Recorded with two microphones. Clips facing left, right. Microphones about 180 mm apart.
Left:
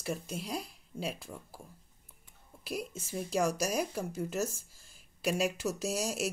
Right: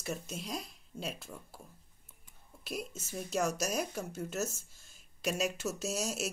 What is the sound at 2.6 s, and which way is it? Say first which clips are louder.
Speech: left 2 dB; 10° left (ahead or behind).